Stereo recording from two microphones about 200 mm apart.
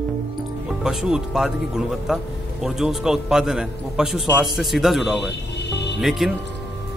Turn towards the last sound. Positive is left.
turn(degrees=0)  # may be behind; listen again after turning